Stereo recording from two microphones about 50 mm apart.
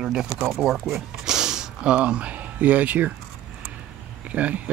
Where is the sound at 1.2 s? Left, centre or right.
Centre; by 3.1 s right.